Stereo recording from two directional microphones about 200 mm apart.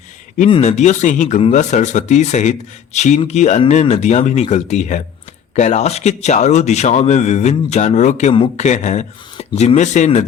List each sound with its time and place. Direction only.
0.5 s a man's voice: 35° left (ahead or behind)